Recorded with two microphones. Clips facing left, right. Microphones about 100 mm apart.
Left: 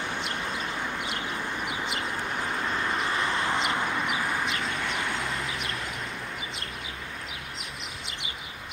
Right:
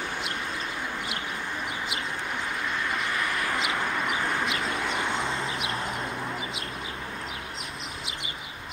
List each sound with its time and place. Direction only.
3.2 s bird: 30° left (ahead or behind)